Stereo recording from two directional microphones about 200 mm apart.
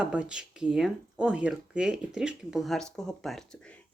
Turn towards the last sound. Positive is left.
turn(degrees=0)  # may be behind; listen again after turning